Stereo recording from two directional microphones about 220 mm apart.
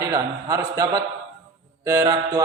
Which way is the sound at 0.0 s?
15° right (ahead or behind).